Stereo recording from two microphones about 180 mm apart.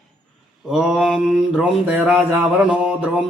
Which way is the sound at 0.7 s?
5° right (ahead or behind).